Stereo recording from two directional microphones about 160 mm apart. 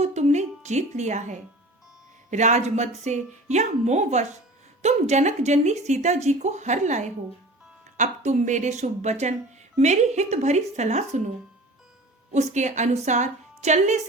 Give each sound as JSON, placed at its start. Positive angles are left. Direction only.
{"t": 0.0, "sound": "music", "side_deg": -45}
{"t": 2.3, "sound": "speech", "side_deg": -45}
{"t": 12.3, "sound": "speech", "side_deg": -45}